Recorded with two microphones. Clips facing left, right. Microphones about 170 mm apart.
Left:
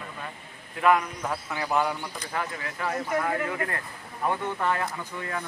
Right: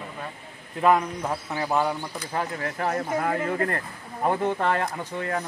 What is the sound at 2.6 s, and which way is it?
Speech, 45° right (ahead or behind).